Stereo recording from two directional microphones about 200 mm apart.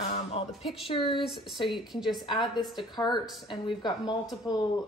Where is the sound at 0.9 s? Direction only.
25° left (ahead or behind).